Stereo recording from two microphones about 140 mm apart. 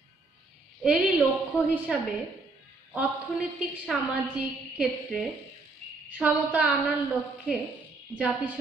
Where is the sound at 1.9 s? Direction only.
5° right (ahead or behind).